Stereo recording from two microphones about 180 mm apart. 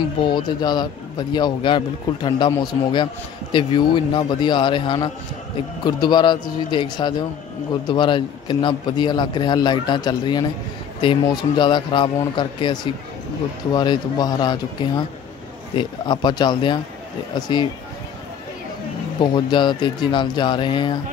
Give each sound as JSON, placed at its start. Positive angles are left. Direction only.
{"t": 0.2, "sound": "a man's voice", "side_deg": 25}
{"t": 19.3, "sound": "a man's voice", "side_deg": 25}